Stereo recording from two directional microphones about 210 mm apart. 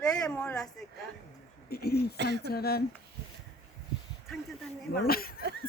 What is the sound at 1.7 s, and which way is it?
Speech, 50° left (ahead or behind).